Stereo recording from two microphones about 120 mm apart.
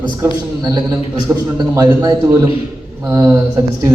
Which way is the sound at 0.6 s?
30° right (ahead or behind).